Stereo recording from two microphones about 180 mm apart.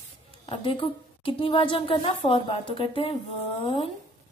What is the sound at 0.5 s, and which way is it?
A woman's voice, 30° left (ahead or behind).